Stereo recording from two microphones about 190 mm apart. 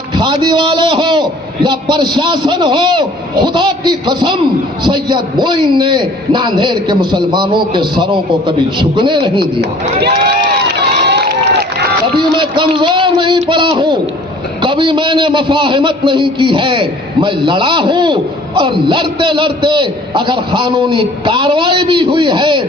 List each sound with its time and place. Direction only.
0.1 s a man's voice: 25° right (ahead or behind)
10.0 s speech: 60° right (ahead or behind)
10.8 s run: 60° right (ahead or behind)
12.1 s a man's voice: 25° right (ahead or behind)